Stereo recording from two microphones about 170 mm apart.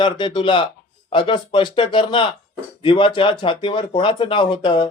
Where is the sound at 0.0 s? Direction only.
30° left (ahead or behind).